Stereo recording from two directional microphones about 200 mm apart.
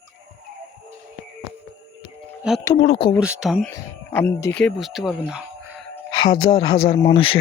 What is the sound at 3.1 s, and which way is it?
Speech, 5° right (ahead or behind).